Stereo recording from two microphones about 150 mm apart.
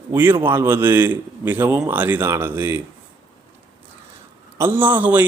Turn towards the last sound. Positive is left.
turn(degrees=-10)  # may be behind; listen again after turning